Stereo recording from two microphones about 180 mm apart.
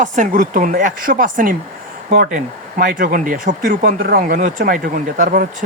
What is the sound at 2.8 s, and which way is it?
Speech, 50° right (ahead or behind).